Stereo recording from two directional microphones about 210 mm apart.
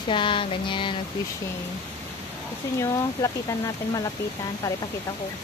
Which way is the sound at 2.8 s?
15° left (ahead or behind).